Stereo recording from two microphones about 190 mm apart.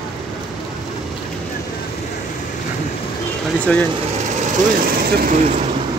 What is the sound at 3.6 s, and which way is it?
Speech, 5° left (ahead or behind).